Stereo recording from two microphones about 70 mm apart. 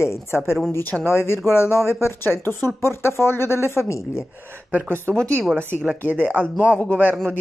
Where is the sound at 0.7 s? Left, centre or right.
Left.